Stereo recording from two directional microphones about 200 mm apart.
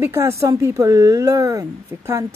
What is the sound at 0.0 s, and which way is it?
Speech, 15° right (ahead or behind).